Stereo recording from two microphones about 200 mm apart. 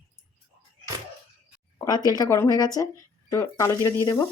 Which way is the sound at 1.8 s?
20° left (ahead or behind).